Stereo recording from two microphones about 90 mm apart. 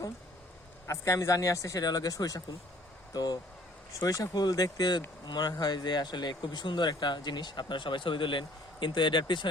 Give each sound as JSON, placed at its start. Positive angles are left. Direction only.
{"t": 0.9, "sound": "speech", "side_deg": 35}